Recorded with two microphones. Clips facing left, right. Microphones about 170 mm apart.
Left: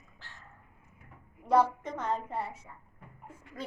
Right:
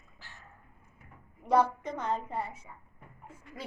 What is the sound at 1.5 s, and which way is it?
A woman's voice, 5° left (ahead or behind).